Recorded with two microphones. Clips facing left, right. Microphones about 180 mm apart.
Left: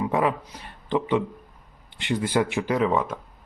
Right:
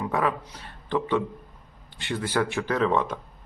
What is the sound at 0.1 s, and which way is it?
A man's voice, 15° left (ahead or behind).